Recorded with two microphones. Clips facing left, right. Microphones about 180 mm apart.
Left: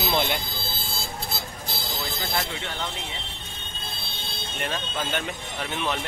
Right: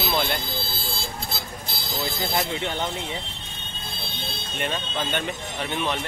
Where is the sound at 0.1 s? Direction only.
20° left (ahead or behind).